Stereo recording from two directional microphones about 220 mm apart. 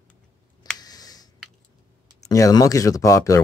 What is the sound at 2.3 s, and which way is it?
Speech, 15° left (ahead or behind).